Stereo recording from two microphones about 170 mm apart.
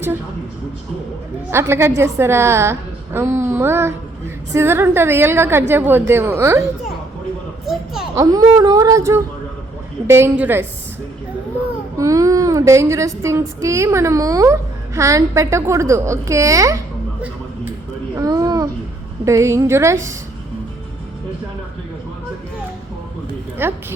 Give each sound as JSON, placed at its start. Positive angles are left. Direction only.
{"t": 1.5, "sound": "child singing", "side_deg": -15}
{"t": 7.6, "sound": "a child's voice", "side_deg": 0}
{"t": 8.1, "sound": "speech", "side_deg": -20}
{"t": 10.1, "sound": "child singing", "side_deg": -15}
{"t": 11.9, "sound": "child singing", "side_deg": -20}
{"t": 18.2, "sound": "a sound", "side_deg": -20}
{"t": 19.2, "sound": "child singing", "side_deg": -15}
{"t": 23.6, "sound": "child singing", "side_deg": -15}